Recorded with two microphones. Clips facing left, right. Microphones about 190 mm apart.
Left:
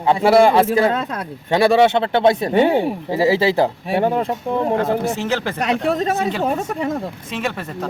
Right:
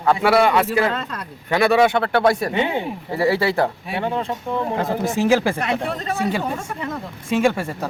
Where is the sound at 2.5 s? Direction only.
40° left (ahead or behind).